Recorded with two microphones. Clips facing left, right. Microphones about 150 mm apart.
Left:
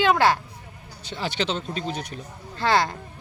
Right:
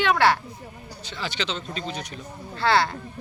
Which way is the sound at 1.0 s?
55° left (ahead or behind).